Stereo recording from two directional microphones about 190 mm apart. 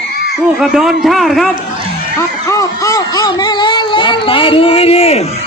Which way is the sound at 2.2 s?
15° left (ahead or behind).